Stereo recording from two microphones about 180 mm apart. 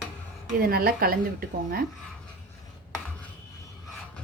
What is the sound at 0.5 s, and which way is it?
A woman's voice, 55° right (ahead or behind).